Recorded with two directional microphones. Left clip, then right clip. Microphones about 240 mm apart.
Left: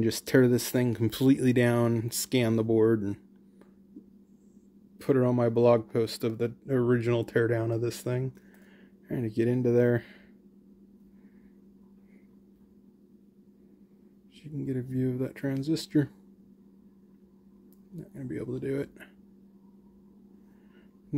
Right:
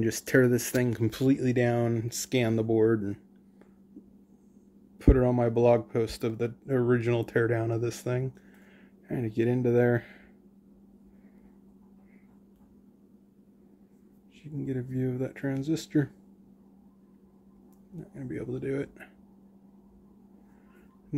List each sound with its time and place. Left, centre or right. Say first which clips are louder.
0.0 s speech: even; left
0.8 s speech: left 1 dB; centre
4.9 s speech: right 1 dB; centre
14.4 s speech: even; centre
17.9 s speech: even; centre